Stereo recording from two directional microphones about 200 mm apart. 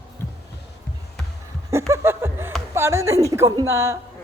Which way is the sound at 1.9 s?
15° right (ahead or behind).